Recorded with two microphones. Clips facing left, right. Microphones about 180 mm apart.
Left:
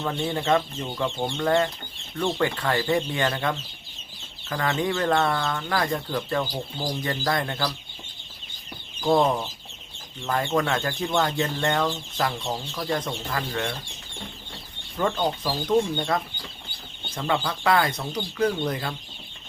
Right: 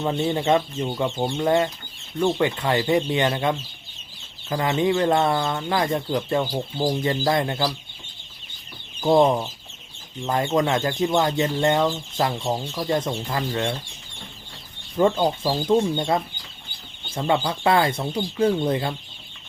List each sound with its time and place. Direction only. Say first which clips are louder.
0.0 s speech: right 4 dB; 20° right (ahead or behind)
9.0 s speech: right 4 dB; 20° right (ahead or behind)
14.9 s speech: right 5 dB; 25° right (ahead or behind)